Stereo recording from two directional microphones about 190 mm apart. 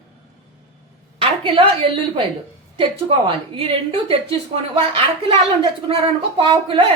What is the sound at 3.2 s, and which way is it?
A woman's voice, 30° right (ahead or behind).